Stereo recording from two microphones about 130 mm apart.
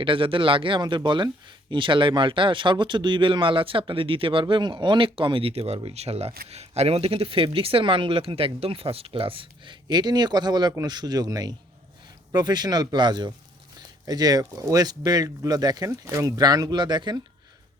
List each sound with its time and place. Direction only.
0.0 s speech: 40° right (ahead or behind)